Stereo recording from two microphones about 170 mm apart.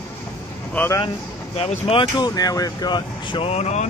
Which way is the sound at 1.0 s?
35° left (ahead or behind).